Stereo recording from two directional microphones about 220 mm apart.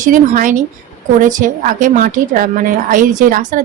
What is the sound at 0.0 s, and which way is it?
A woman's voice, 35° right (ahead or behind).